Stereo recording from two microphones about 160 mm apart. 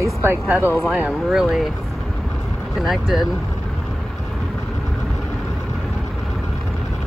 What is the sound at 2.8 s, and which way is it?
Speech, centre (ahead or behind).